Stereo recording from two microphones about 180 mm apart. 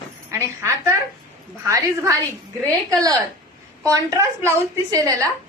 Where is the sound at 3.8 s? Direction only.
20° right (ahead or behind).